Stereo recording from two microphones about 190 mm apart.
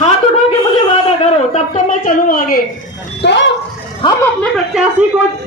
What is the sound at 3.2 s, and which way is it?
Speech, 65° left (ahead or behind).